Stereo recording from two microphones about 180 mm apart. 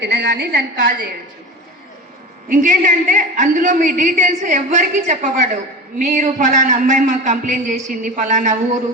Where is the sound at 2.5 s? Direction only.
45° right (ahead or behind).